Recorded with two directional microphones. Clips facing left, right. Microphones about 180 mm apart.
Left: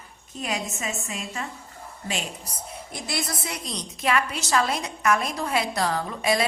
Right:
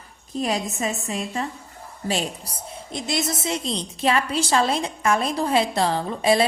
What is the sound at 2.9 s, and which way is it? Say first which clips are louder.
A woman's voice: right 6 dB; 20° right (ahead or behind).